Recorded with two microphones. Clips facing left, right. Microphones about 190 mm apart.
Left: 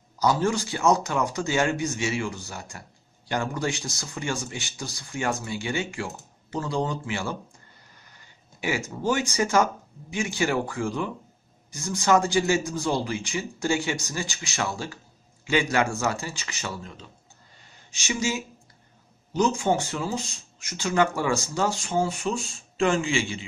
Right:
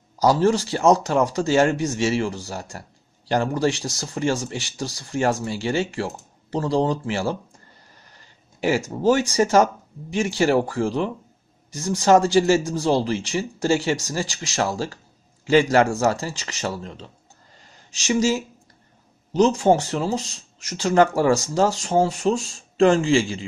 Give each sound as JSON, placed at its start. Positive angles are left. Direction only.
{"t": 0.2, "sound": "speech", "side_deg": -35}
{"t": 8.5, "sound": "speech", "side_deg": -40}